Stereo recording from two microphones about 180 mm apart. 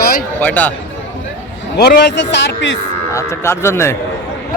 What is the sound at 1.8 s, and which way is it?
A man's voice, 65° left (ahead or behind).